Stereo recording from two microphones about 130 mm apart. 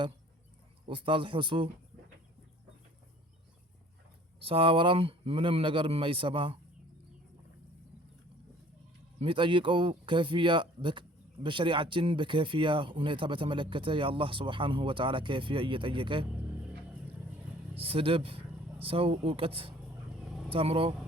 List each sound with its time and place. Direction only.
0.9 s speech: 40° right (ahead or behind)
4.4 s speech: 45° right (ahead or behind)
9.1 s speech: 45° right (ahead or behind)
17.7 s speech: 45° right (ahead or behind)